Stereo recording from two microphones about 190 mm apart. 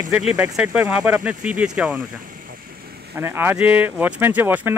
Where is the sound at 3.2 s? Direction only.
10° right (ahead or behind).